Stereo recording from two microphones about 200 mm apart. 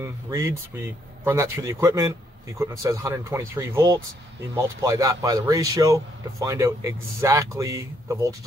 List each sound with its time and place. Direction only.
0.0 s a man's voice: 15° right (ahead or behind)